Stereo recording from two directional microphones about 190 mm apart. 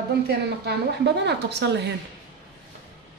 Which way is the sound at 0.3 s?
60° right (ahead or behind).